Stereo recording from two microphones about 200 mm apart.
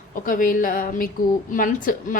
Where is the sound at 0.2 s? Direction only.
45° left (ahead or behind).